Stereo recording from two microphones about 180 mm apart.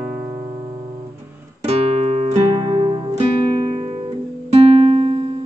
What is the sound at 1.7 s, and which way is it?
Music, 35° right (ahead or behind).